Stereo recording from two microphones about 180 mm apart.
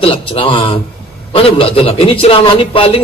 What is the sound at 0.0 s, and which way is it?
A man's voice, 30° left (ahead or behind).